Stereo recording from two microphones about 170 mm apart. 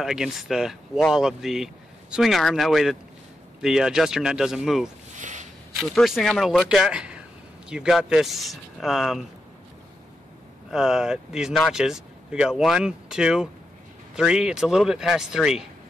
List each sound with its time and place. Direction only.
0.0 s speech: 5° right (ahead or behind)
5.1 s a sound: 45° right (ahead or behind)
5.8 s speech: centre (ahead or behind)
10.7 s speech: 5° right (ahead or behind)